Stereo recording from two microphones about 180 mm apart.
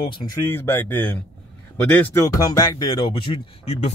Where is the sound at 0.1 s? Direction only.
25° left (ahead or behind).